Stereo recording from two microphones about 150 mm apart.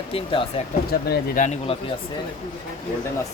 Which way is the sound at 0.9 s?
90° left.